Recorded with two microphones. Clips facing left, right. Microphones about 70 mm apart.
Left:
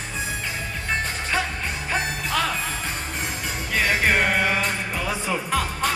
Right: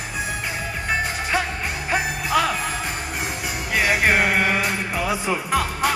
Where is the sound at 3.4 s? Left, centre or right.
Centre.